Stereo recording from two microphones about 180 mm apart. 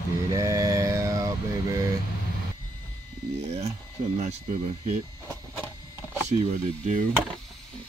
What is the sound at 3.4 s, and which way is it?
Speech, 35° right (ahead or behind).